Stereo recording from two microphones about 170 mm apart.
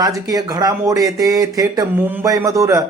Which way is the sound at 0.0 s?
20° right (ahead or behind).